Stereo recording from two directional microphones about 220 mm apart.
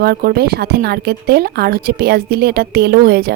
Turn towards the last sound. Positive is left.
turn(degrees=-45)  # may be behind; listen again after turning